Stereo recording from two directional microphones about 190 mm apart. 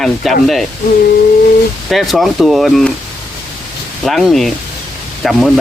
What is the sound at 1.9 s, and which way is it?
Speech, centre (ahead or behind).